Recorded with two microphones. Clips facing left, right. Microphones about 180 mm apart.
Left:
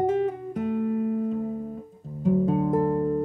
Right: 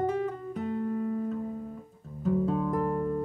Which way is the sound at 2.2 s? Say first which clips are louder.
Left 5 dB; 15° left (ahead or behind).